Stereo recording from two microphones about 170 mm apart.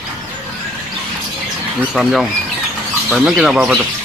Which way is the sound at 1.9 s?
Centre (ahead or behind).